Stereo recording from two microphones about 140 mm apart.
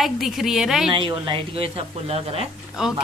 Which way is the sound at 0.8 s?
35° right (ahead or behind).